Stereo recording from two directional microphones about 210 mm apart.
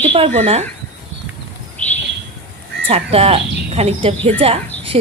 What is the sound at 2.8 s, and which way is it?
Speech, 30° right (ahead or behind).